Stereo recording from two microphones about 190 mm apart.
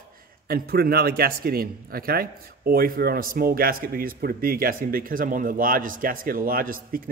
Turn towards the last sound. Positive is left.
turn(degrees=-50)  # may be behind; listen again after turning